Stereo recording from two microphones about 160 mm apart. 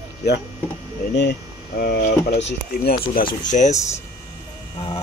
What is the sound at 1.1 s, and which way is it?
Speech, 90° left.